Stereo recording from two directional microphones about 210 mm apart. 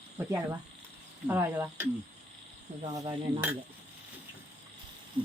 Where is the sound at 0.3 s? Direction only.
15° right (ahead or behind).